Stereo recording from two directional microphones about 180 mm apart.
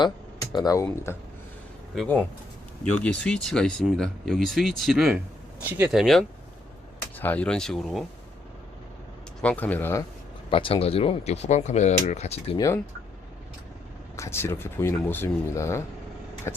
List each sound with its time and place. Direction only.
0.5 s speech: 20° left (ahead or behind)
2.0 s speech: 10° left (ahead or behind)
9.4 s speech: 10° left (ahead or behind)
10.5 s speech: 30° left (ahead or behind)
12.5 s speech: 15° left (ahead or behind)
14.2 s speech: 15° left (ahead or behind)